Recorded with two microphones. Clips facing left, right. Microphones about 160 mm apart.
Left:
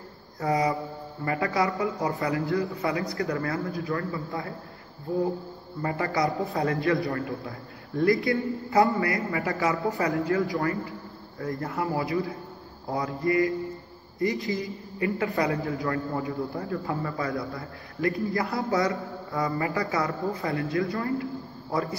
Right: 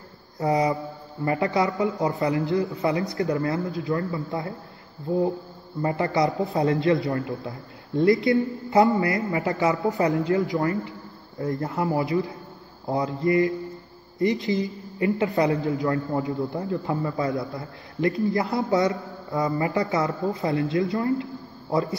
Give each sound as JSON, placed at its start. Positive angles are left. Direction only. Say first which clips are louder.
{"t": 0.4, "sound": "speech", "louder": "right 3 dB", "side_deg": -20}